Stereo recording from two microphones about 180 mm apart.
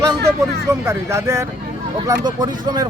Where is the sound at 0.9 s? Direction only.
15° right (ahead or behind).